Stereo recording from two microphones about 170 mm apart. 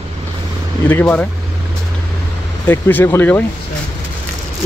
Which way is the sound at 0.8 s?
10° left (ahead or behind).